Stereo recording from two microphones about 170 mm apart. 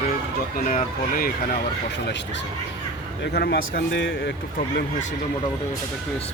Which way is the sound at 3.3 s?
65° left (ahead or behind).